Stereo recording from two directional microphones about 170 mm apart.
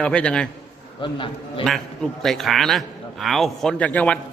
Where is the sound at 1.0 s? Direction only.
30° left (ahead or behind).